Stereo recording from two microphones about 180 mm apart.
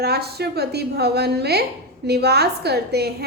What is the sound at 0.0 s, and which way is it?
A woman's voice, 65° right (ahead or behind).